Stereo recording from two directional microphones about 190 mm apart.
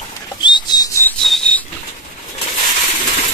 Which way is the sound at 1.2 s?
Centre (ahead or behind).